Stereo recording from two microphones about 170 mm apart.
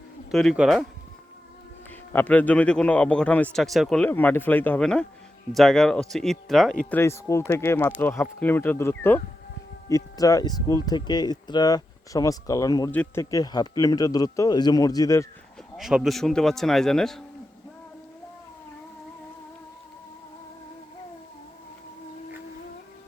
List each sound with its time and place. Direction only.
0.3 s speech: centre (ahead or behind)
2.1 s speech: 10° left (ahead or behind)
6.9 s speech: 15° left (ahead or behind)
12.9 s speech: 10° left (ahead or behind)
13.3 s speech: 20° left (ahead or behind)
15.8 s speech: 5° right (ahead or behind)